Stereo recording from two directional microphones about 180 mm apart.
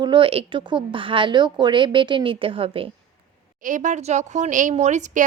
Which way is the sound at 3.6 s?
45° right (ahead or behind).